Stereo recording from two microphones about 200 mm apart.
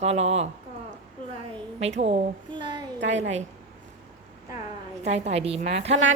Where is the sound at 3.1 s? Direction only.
35° right (ahead or behind).